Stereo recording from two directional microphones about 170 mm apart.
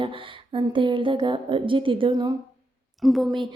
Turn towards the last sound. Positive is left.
turn(degrees=0)  # may be behind; listen again after turning